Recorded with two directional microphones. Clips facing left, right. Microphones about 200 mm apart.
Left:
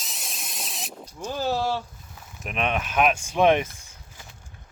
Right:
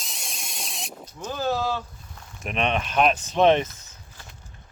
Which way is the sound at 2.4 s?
5° left (ahead or behind).